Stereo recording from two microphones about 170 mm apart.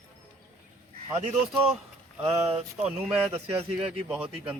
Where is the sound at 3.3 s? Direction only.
35° right (ahead or behind).